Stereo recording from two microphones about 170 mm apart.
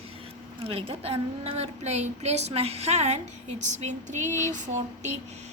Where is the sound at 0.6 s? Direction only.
35° right (ahead or behind).